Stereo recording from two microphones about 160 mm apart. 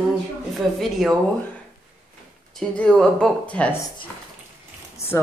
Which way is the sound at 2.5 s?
5° left (ahead or behind).